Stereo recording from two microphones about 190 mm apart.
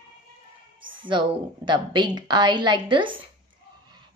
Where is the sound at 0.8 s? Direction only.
25° right (ahead or behind).